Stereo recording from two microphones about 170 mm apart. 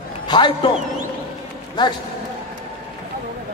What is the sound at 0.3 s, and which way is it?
Speech, 25° left (ahead or behind).